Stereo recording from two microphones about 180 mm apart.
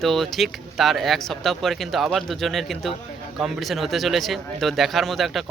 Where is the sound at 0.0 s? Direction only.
Centre (ahead or behind).